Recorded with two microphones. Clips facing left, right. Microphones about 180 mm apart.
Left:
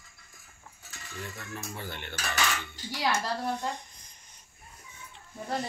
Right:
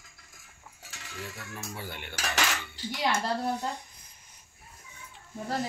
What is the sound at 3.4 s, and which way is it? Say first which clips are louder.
Speech: right 1 dB; 10° right (ahead or behind).